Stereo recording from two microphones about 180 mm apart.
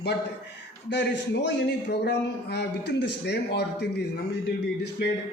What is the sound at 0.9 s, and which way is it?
A man's voice, 75° left (ahead or behind).